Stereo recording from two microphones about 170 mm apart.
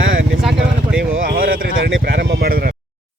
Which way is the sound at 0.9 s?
60° right (ahead or behind).